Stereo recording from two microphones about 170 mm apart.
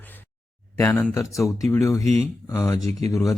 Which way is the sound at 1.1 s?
20° left (ahead or behind).